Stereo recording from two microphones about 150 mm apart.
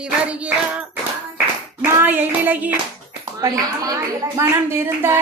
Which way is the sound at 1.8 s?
10° right (ahead or behind).